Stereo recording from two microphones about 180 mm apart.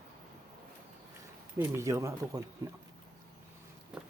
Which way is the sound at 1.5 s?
15° right (ahead or behind).